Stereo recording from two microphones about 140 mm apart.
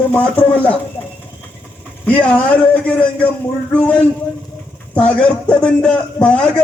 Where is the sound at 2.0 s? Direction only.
10° left (ahead or behind).